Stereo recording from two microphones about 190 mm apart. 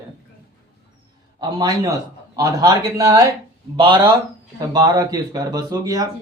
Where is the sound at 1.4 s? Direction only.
20° right (ahead or behind).